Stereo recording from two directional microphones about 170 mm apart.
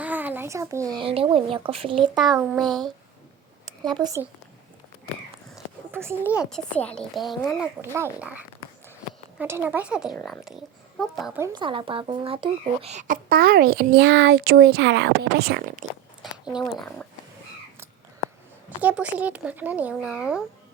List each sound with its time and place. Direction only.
0.0 s babbling: 10° right (ahead or behind)
1.0 s speech: 35° right (ahead or behind)
2.0 s speech: centre (ahead or behind)
3.9 s speech: 25° right (ahead or behind)
5.5 s a sound: 15° right (ahead or behind)
6.4 s speech: 5° left (ahead or behind)
7.8 s speech: 15° right (ahead or behind)
10.2 s speech: 10° left (ahead or behind)
11.5 s speech: 30° right (ahead or behind); by 15.9 s 50° right (ahead or behind)
16.7 s speech: 5° left (ahead or behind)
18.8 s speech: 10° right (ahead or behind)